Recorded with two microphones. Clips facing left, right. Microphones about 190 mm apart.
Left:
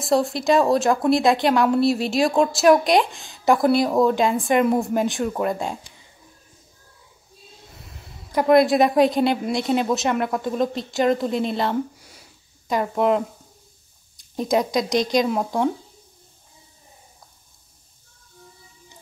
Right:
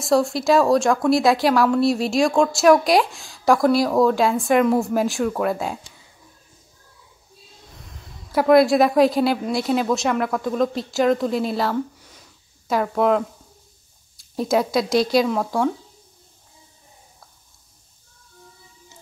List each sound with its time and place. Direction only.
0.0 s speech: centre (ahead or behind)
8.3 s speech: 5° right (ahead or behind)
12.0 s a sound: 10° left (ahead or behind)
12.8 s speech: 5° left (ahead or behind)
14.3 s speech: 5° right (ahead or behind)
15.3 s speech: 20° left (ahead or behind)